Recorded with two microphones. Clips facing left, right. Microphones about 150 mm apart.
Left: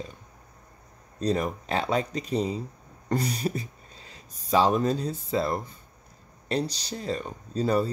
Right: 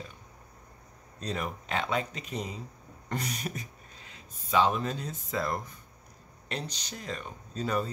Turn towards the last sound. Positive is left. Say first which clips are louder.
# left 6 dB
turn(degrees=35)  # may be behind; listen again after turning